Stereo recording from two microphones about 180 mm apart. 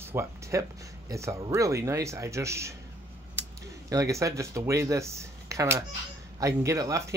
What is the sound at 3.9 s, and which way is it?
Speech, 20° right (ahead or behind).